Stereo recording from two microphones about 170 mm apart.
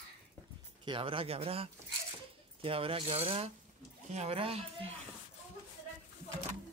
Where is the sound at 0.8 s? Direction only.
30° right (ahead or behind).